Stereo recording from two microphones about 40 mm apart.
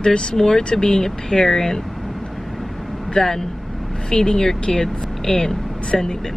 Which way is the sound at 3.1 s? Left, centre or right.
Centre.